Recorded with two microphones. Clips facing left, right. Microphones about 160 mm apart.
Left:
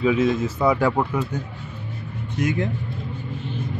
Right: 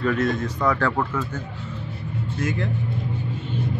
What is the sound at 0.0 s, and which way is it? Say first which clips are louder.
Speech: left 3 dB; centre (ahead or behind).